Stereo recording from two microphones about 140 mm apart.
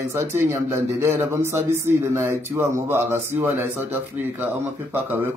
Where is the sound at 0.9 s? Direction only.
15° right (ahead or behind).